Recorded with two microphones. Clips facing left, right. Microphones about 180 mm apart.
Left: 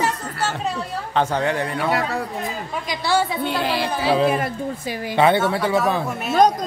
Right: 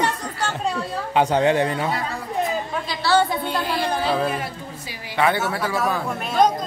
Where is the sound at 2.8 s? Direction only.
15° left (ahead or behind).